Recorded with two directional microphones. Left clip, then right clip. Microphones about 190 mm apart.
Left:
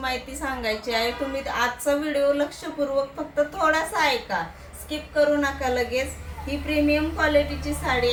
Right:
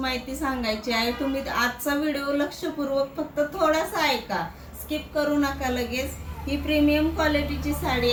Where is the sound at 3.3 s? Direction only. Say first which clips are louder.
Left 1 dB; 20° left (ahead or behind).